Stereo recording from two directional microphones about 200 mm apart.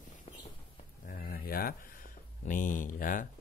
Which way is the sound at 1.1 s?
50° left (ahead or behind).